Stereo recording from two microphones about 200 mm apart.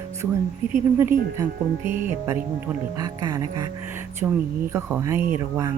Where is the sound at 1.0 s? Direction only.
10° right (ahead or behind).